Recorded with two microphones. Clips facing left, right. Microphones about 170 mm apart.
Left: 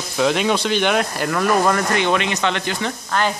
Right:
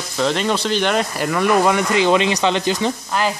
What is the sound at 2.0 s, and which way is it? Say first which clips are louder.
Speech: right 4 dB; 25° right (ahead or behind).